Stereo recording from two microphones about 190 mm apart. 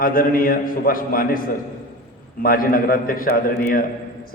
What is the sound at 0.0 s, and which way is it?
A man's voice, 50° left (ahead or behind).